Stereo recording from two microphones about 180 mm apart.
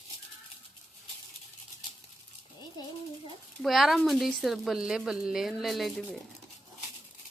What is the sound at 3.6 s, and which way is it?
Speech, centre (ahead or behind).